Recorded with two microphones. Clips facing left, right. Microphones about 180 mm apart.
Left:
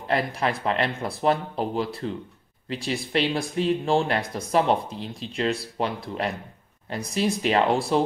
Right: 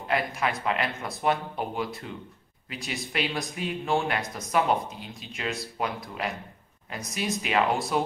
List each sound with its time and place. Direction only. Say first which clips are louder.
0.1 s speech: left 3 dB; 35° left (ahead or behind)